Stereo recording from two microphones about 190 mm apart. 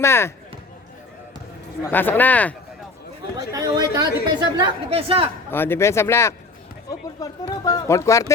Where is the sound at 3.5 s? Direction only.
20° right (ahead or behind).